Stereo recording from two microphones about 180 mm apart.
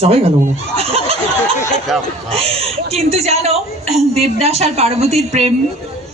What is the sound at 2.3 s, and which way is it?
Speech, 30° right (ahead or behind).